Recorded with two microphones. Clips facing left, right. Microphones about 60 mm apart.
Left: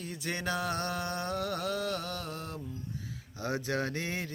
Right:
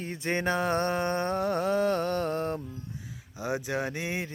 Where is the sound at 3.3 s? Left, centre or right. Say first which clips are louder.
Right 2 dB; centre.